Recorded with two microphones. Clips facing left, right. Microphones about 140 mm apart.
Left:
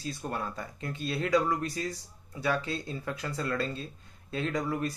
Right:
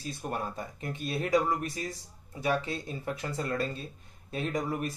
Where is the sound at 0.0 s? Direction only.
15° right (ahead or behind).